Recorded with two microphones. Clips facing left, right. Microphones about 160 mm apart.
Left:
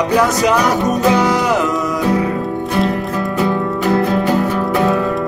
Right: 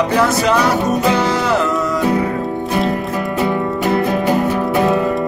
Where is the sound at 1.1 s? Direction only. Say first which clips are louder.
Left 2 dB; 15° left (ahead or behind).